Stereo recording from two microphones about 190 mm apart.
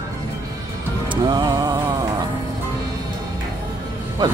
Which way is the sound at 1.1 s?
25° right (ahead or behind).